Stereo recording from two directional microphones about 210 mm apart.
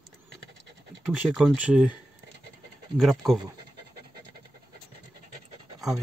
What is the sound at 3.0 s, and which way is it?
Speech, centre (ahead or behind).